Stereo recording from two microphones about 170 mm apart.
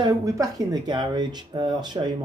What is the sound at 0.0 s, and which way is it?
Speech, 20° right (ahead or behind).